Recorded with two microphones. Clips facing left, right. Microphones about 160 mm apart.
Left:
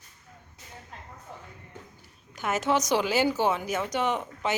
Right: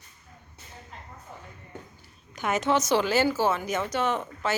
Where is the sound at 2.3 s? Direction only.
5° left (ahead or behind).